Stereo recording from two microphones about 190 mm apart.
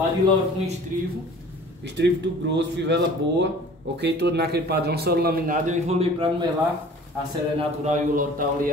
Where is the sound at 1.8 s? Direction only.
65° right (ahead or behind); by 6.5 s 30° right (ahead or behind).